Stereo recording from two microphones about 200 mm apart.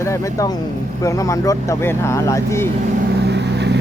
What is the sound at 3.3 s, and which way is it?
Vehicle, 55° right (ahead or behind).